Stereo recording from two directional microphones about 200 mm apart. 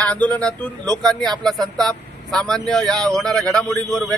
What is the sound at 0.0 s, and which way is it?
Speech, 5° left (ahead or behind).